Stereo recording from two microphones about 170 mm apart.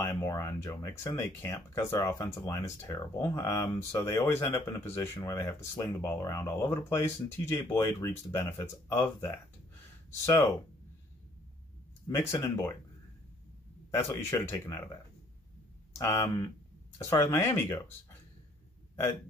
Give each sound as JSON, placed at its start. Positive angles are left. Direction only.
{"t": 0.0, "sound": "speech", "side_deg": 15}
{"t": 12.1, "sound": "speech", "side_deg": 15}
{"t": 13.9, "sound": "speech", "side_deg": 15}
{"t": 16.0, "sound": "speech", "side_deg": 20}